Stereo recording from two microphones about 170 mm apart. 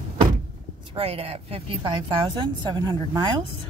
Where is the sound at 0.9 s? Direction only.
35° right (ahead or behind).